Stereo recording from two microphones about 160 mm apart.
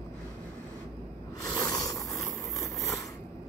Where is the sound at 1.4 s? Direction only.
20° left (ahead or behind).